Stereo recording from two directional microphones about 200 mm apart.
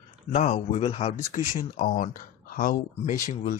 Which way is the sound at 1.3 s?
40° left (ahead or behind).